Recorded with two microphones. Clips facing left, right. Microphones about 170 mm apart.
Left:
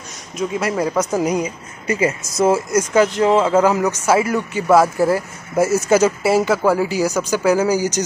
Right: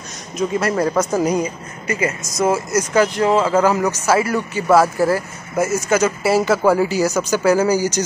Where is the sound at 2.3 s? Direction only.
25° left (ahead or behind).